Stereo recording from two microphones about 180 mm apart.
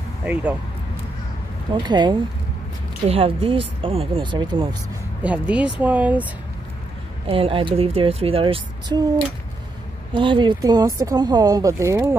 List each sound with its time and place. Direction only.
0.2 s speech: 5° right (ahead or behind)
1.7 s speech: 25° right (ahead or behind)
5.2 s speech: 5° right (ahead or behind)
7.2 s speech: 30° right (ahead or behind)
10.1 s speech: 25° right (ahead or behind)